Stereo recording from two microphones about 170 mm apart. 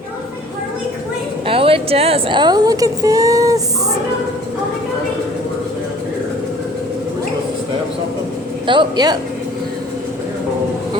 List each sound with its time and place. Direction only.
1.5 s speech: 30° right (ahead or behind)
8.6 s speech: 30° right (ahead or behind)